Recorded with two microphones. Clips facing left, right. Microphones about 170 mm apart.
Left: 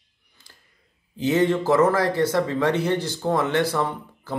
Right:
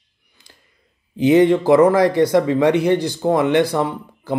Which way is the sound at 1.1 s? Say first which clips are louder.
Right 7 dB; 15° right (ahead or behind).